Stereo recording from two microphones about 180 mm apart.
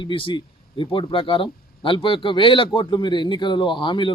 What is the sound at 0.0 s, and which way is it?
Speech, 30° left (ahead or behind).